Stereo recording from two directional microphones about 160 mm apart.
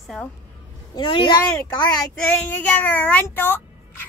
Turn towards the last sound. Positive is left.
turn(degrees=10)  # may be behind; listen again after turning